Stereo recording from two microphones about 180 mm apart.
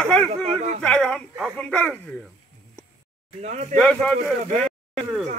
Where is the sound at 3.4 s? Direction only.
40° right (ahead or behind).